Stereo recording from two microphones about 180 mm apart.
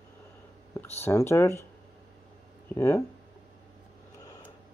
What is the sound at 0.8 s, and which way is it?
Speech, 15° left (ahead or behind).